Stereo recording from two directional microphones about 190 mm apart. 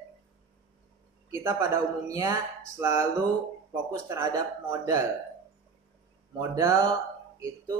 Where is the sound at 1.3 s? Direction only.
15° right (ahead or behind).